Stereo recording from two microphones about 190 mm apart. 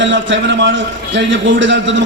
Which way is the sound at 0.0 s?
70° right (ahead or behind).